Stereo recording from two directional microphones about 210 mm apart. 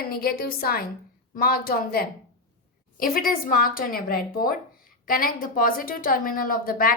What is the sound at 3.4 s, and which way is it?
A woman's voice, 45° left (ahead or behind).